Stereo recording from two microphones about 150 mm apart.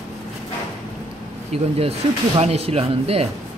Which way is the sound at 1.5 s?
40° right (ahead or behind).